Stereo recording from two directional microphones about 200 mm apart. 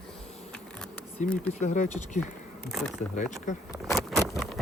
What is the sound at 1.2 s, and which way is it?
Speech, 40° left (ahead or behind).